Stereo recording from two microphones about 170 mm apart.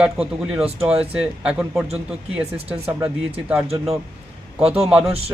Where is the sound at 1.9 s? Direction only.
35° right (ahead or behind).